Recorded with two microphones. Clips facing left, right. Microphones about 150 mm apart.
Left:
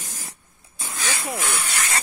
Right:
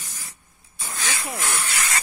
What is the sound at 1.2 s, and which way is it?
Snake, centre (ahead or behind).